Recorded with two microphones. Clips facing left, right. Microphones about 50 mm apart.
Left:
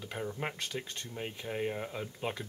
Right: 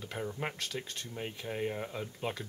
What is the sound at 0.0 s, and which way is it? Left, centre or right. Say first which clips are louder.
Speech: even; centre.